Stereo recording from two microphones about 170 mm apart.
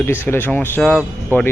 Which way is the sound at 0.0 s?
10° left (ahead or behind).